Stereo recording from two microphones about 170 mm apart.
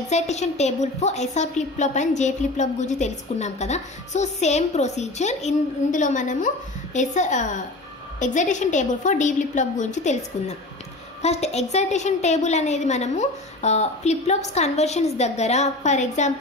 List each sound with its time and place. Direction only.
0.1 s a woman's voice: 40° left (ahead or behind)